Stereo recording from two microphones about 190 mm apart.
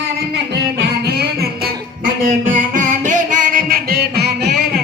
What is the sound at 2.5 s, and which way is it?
Music, 45° right (ahead or behind).